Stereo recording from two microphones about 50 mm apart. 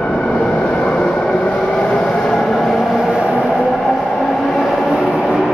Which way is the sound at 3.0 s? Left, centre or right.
Right.